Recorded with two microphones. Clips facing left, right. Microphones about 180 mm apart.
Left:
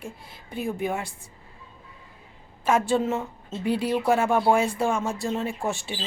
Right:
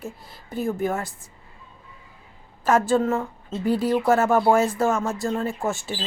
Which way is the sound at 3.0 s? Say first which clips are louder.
Right 3 dB; 20° left (ahead or behind).